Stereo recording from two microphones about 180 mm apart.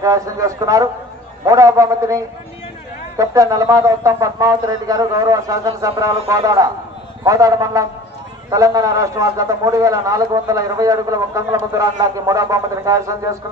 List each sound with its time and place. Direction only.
0.0 s a man's voice: 20° right (ahead or behind)